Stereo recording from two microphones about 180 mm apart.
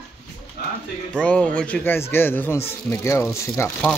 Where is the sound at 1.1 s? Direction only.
5° left (ahead or behind).